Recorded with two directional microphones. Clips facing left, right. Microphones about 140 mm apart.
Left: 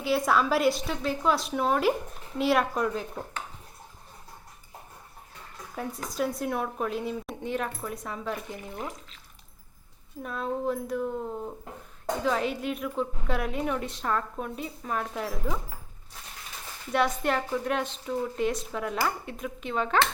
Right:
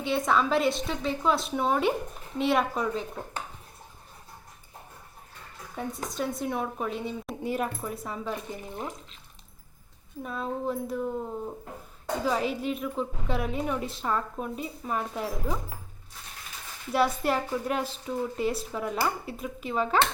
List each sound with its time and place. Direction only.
0.0 s a woman's voice: 5° left (ahead or behind)
5.7 s a woman's voice: centre (ahead or behind)
10.2 s a woman's voice: centre (ahead or behind)
12.2 s a woman's voice: centre (ahead or behind)
16.9 s a woman's voice: 5° right (ahead or behind)